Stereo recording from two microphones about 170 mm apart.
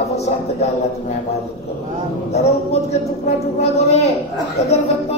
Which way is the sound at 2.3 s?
40° left (ahead or behind).